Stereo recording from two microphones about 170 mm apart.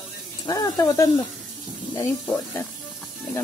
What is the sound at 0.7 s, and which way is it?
Speech, 20° left (ahead or behind).